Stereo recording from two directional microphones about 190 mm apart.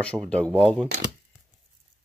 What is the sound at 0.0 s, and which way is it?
Speech, 5° left (ahead or behind).